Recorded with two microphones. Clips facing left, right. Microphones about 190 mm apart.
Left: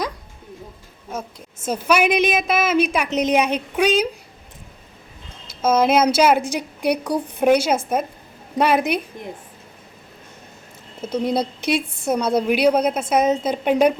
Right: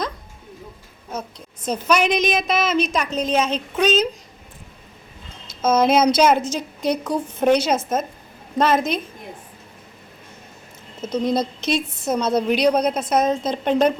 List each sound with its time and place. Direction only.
1.6 s a woman's voice: 10° left (ahead or behind)
5.6 s a woman's voice: 5° left (ahead or behind)
11.0 s a woman's voice: 10° left (ahead or behind)